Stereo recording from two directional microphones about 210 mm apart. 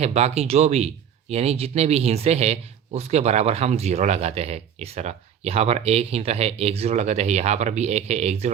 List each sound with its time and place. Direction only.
0.0 s speech: 30° right (ahead or behind)